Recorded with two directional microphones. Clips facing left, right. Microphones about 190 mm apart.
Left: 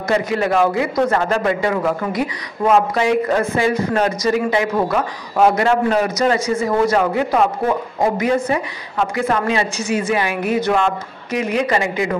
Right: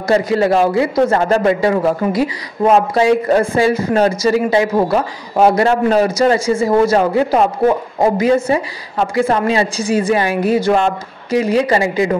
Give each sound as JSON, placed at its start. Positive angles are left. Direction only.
{"t": 0.1, "sound": "a man's voice", "side_deg": -35}